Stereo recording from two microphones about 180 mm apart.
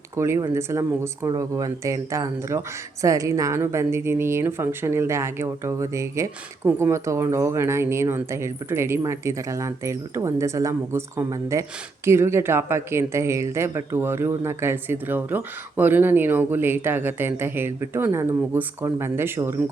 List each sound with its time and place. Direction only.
0.2 s speech: 15° right (ahead or behind)